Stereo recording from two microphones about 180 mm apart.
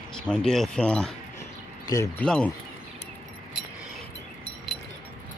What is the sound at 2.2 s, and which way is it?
Speech, 5° left (ahead or behind).